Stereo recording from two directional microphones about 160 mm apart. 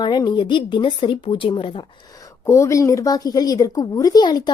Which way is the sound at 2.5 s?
20° left (ahead or behind).